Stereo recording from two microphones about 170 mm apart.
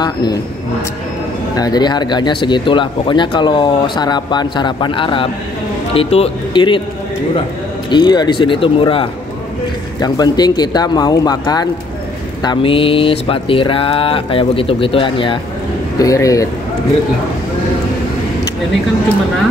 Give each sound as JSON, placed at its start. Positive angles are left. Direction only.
{"t": 0.0, "sound": "speech", "side_deg": 25}
{"t": 1.6, "sound": "speech", "side_deg": 25}
{"t": 7.9, "sound": "speech", "side_deg": 25}
{"t": 16.0, "sound": "speech", "side_deg": 20}